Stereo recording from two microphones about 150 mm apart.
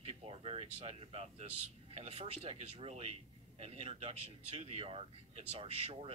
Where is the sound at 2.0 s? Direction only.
45° right (ahead or behind).